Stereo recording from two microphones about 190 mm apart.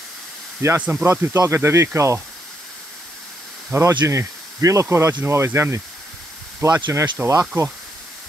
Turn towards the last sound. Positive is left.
turn(degrees=-15)  # may be behind; listen again after turning